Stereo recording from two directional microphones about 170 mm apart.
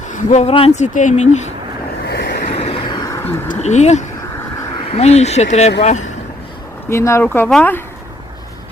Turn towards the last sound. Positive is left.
turn(degrees=10)  # may be behind; listen again after turning